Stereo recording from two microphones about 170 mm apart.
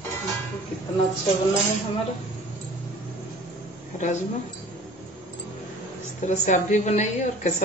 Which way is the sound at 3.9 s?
45° left (ahead or behind).